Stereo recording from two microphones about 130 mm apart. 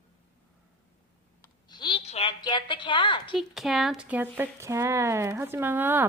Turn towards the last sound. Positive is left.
turn(degrees=-15)  # may be behind; listen again after turning